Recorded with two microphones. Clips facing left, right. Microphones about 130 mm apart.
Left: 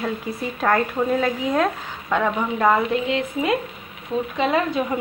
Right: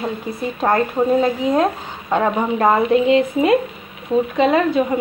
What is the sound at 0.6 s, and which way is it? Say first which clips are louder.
Speech: right 3 dB; 30° right (ahead or behind).